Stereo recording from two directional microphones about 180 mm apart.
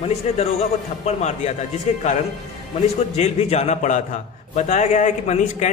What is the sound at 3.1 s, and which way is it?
A man's voice, 40° left (ahead or behind).